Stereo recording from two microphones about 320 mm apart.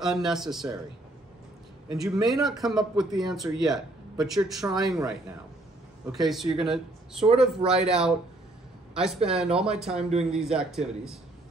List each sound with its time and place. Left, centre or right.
0.0 s speech: centre
1.9 s a man's voice: centre
2.2 s speech: centre
8.9 s speech: centre
9.8 s a man's voice: centre
10.3 s speech: centre